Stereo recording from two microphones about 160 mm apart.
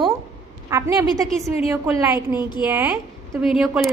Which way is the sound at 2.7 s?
10° right (ahead or behind).